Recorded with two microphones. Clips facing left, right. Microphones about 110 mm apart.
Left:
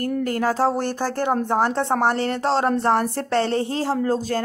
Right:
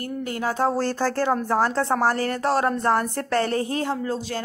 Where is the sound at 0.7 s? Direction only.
20° left (ahead or behind).